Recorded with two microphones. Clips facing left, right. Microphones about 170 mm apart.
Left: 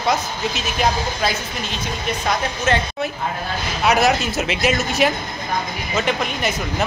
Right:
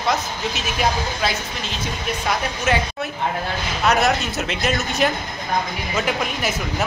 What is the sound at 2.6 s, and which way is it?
A woman's voice, 10° right (ahead or behind).